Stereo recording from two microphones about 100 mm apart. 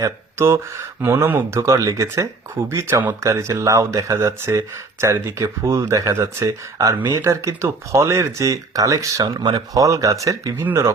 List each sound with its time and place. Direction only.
0.0 s speech: 25° right (ahead or behind)
9.4 s speech: 50° right (ahead or behind)
9.7 s speech: 35° right (ahead or behind)